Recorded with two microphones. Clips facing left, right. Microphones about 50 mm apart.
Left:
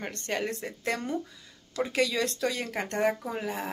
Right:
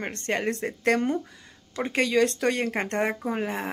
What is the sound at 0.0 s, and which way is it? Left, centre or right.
A woman's voice, right.